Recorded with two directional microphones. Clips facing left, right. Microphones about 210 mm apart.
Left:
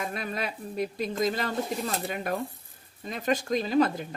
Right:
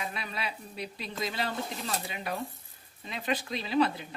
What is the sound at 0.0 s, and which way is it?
Speech, 45° left (ahead or behind).